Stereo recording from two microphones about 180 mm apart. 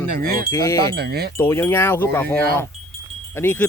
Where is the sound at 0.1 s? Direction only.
55° right (ahead or behind).